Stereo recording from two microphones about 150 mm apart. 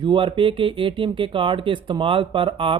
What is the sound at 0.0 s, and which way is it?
Speech, 35° right (ahead or behind).